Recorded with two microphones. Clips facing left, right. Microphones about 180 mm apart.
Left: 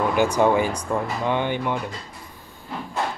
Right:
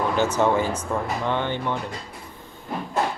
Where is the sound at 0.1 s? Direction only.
15° left (ahead or behind).